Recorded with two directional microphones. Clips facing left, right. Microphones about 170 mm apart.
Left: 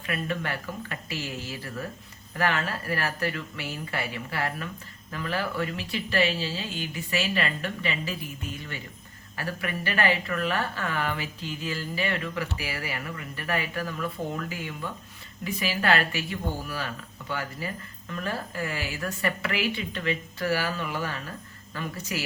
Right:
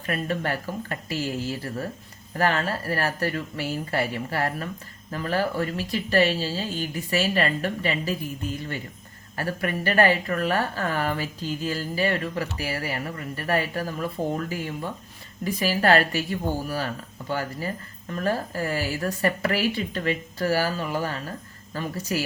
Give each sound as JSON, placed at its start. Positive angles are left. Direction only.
{"t": 0.0, "sound": "a woman's voice", "side_deg": -40}
{"t": 2.3, "sound": "a woman's voice", "side_deg": -40}
{"t": 9.4, "sound": "a woman's voice", "side_deg": -45}